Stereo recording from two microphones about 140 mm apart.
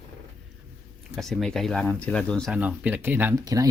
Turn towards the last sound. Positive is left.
turn(degrees=-25)  # may be behind; listen again after turning